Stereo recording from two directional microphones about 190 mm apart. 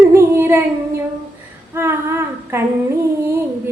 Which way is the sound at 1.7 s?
10° right (ahead or behind).